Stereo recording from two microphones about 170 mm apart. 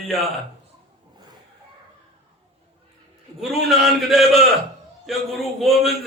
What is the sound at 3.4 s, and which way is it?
A man's voice, centre (ahead or behind).